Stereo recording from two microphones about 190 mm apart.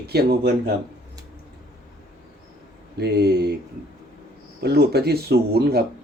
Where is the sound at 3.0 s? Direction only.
60° right (ahead or behind).